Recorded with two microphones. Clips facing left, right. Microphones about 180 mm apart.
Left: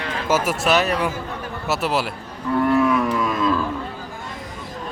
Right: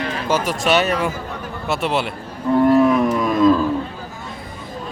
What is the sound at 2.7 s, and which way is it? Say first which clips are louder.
Cattle: right 3 dB; 35° right (ahead or behind).